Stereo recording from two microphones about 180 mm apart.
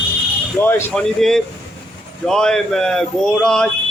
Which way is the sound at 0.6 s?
10° left (ahead or behind).